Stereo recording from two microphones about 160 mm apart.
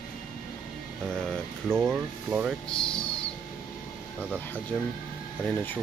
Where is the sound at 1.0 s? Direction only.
5° left (ahead or behind).